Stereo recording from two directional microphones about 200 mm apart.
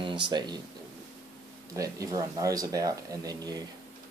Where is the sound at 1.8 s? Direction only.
15° right (ahead or behind).